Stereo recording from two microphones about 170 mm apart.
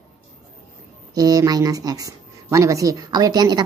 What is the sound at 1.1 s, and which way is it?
Speech, 20° right (ahead or behind).